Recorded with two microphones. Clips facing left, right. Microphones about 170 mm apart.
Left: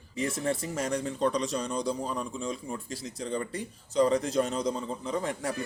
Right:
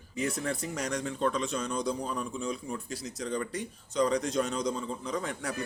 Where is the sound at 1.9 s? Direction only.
Centre (ahead or behind).